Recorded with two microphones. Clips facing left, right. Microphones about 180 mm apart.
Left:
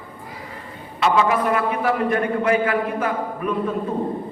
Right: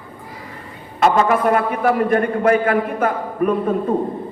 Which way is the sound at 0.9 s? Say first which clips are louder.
Right 3 dB; 45° right (ahead or behind).